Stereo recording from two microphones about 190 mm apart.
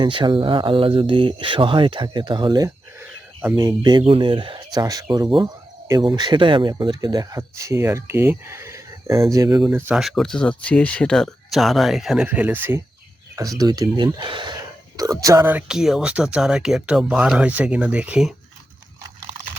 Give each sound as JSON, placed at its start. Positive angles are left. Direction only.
{"t": 0.0, "sound": "speech", "side_deg": -25}
{"t": 9.6, "sound": "speech", "side_deg": -5}